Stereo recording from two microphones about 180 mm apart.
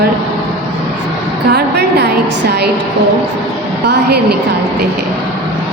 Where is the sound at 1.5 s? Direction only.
65° right (ahead or behind).